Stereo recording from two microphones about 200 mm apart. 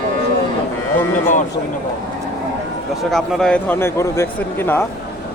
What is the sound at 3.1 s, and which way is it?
A man's voice, 5° left (ahead or behind).